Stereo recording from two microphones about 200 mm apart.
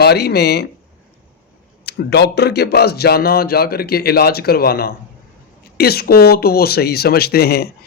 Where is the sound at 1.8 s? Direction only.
55° left (ahead or behind).